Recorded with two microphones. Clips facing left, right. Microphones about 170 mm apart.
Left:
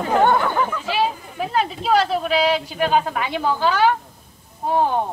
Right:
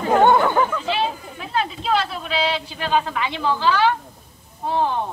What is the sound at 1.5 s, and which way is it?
Speech, 45° left (ahead or behind).